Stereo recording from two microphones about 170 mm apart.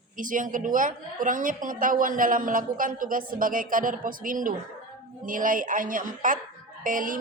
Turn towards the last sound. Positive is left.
turn(degrees=-50)  # may be behind; listen again after turning